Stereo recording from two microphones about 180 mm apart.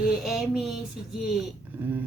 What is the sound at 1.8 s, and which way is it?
Speech, 10° right (ahead or behind).